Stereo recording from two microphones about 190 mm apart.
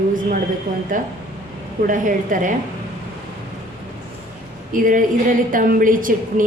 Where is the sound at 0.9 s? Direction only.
45° right (ahead or behind).